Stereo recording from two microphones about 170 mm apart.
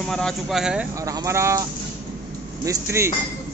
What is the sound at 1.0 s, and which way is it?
Speech, 15° right (ahead or behind).